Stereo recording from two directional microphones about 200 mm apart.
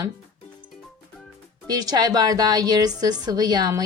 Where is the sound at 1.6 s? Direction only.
20° right (ahead or behind).